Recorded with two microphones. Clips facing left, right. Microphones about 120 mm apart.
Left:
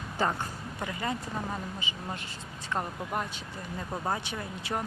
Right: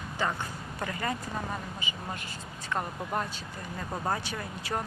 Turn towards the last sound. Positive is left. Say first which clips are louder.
# even
turn(degrees=20)  # may be behind; listen again after turning